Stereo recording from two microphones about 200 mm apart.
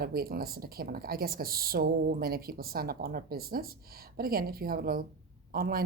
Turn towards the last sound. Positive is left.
turn(degrees=-45)  # may be behind; listen again after turning